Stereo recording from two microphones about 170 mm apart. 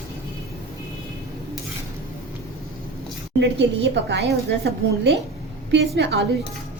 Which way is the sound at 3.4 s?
90° right.